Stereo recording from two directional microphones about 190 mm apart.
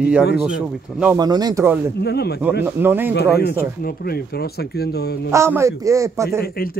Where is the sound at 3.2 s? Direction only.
55° left (ahead or behind).